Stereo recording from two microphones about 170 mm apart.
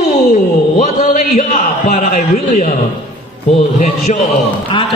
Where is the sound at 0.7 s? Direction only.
45° left (ahead or behind).